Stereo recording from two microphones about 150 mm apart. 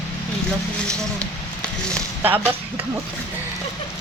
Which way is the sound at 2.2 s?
15° right (ahead or behind).